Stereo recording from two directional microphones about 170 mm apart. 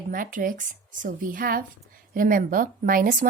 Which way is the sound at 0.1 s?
55° right (ahead or behind).